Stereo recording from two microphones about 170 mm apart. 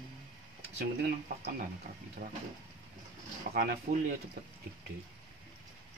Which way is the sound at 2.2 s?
70° right (ahead or behind).